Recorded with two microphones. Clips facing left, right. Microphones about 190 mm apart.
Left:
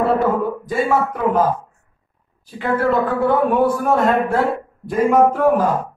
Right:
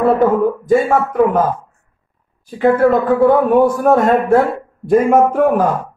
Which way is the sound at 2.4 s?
50° right (ahead or behind).